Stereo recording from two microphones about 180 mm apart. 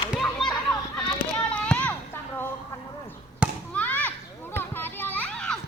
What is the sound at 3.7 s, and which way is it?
Children playing, 10° left (ahead or behind).